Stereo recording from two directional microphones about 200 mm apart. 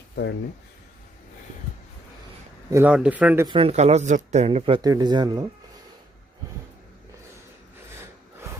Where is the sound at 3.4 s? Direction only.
25° right (ahead or behind).